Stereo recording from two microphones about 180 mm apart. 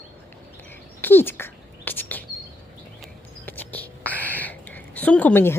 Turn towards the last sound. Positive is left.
turn(degrees=10)  # may be behind; listen again after turning